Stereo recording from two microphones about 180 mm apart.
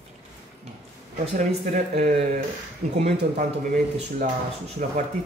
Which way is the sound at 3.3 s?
50° right (ahead or behind).